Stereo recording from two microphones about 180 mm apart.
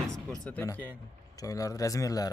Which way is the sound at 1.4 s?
20° left (ahead or behind).